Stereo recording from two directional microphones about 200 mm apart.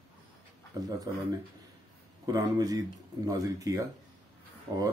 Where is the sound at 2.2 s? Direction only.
20° right (ahead or behind).